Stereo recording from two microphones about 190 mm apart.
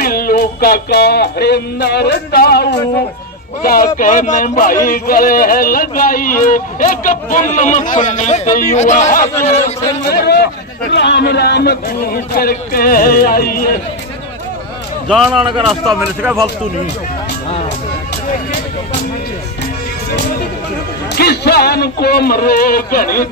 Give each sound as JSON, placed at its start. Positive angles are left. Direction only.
{"t": 0.0, "sound": "a man's voice", "side_deg": 50}
{"t": 10.0, "sound": "a man's voice", "side_deg": 60}
{"t": 15.5, "sound": "speech", "side_deg": 0}
{"t": 21.2, "sound": "a man's voice", "side_deg": 55}